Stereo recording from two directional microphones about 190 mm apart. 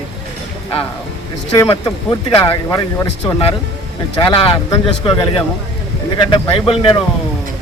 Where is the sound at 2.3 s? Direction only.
20° left (ahead or behind).